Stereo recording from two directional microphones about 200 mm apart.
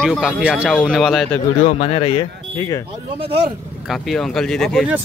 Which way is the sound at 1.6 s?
30° left (ahead or behind).